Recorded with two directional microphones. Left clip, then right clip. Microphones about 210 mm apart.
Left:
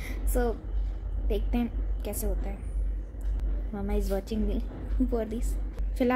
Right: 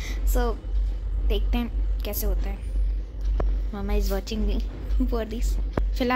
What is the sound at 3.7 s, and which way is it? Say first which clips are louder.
A woman's voice: right 2 dB; 5° left (ahead or behind).